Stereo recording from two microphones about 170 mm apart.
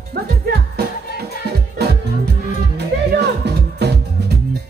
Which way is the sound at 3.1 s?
80° right.